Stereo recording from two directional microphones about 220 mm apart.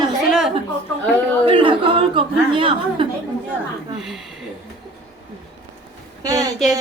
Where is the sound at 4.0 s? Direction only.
Centre (ahead or behind).